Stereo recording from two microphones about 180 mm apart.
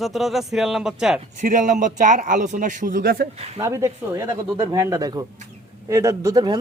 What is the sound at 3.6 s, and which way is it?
Speech, 15° right (ahead or behind).